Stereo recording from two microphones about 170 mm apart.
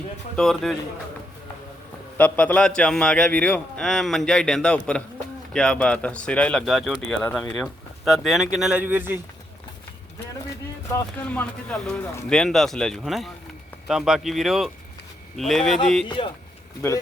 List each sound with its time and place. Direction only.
0.3 s speech: 5° left (ahead or behind)
2.1 s speech: 10° left (ahead or behind); by 9.2 s 10° right (ahead or behind)
10.9 s speech: 10° left (ahead or behind)
16.0 s speech: 30° left (ahead or behind)